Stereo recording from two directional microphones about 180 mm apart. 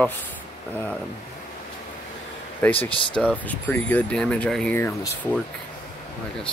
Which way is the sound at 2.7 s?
30° left (ahead or behind).